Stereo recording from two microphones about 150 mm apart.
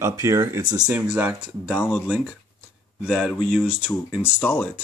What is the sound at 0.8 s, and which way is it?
Speech, 5° right (ahead or behind).